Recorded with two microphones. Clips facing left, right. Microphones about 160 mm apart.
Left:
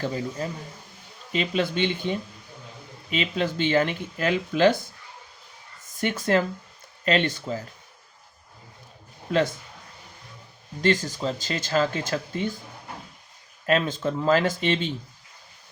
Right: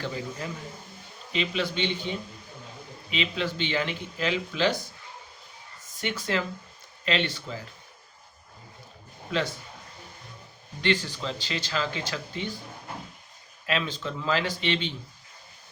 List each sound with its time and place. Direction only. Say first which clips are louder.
0.0 s speech: left 5 dB; 40° left (ahead or behind)
6.0 s speech: left 6 dB; 50° left (ahead or behind)
10.8 s speech: left 4 dB; 45° left (ahead or behind)
13.7 s speech: left 6 dB; 45° left (ahead or behind)